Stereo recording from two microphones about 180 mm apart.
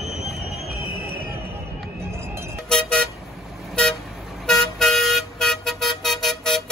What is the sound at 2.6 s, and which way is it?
Vehicle, 5° left (ahead or behind).